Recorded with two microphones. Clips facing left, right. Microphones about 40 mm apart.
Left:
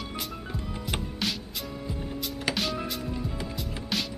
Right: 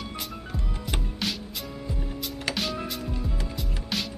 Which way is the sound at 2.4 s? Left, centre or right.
Centre.